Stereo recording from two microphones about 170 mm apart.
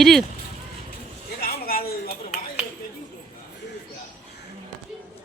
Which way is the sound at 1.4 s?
60° left (ahead or behind).